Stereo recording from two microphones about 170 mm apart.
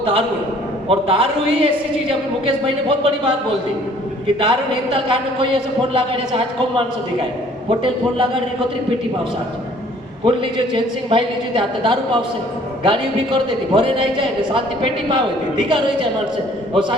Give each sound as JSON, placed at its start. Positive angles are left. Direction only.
{"t": 0.9, "sound": "a woman's voice", "side_deg": -35}
{"t": 4.4, "sound": "a woman's voice", "side_deg": -30}
{"t": 10.2, "sound": "a man's voice", "side_deg": -30}